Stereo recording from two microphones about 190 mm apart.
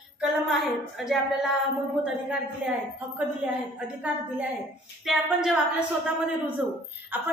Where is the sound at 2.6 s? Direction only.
5° right (ahead or behind).